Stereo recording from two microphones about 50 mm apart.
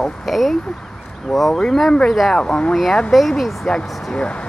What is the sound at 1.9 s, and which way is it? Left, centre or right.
Speech, centre.